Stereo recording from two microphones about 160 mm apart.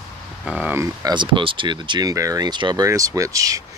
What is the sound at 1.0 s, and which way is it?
Speech, 30° right (ahead or behind).